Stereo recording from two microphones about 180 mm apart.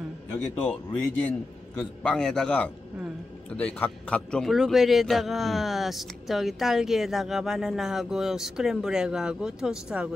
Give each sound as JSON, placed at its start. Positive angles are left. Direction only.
{"t": 0.3, "sound": "a man's voice", "side_deg": 5}